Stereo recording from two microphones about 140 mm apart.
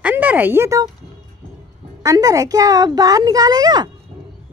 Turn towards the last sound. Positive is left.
turn(degrees=-30)  # may be behind; listen again after turning